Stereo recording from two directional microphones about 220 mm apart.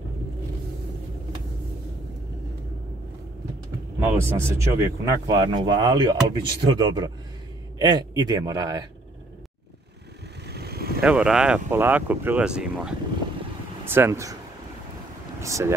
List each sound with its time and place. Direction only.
4.0 s speech: 10° right (ahead or behind)
10.5 s vehicle: 45° right (ahead or behind)
11.0 s speech: 5° right (ahead or behind)
15.4 s speech: 15° right (ahead or behind)